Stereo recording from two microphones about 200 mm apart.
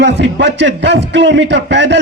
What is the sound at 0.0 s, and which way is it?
A man's voice, 65° right (ahead or behind).